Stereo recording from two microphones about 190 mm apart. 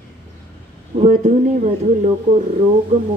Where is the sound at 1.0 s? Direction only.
40° right (ahead or behind).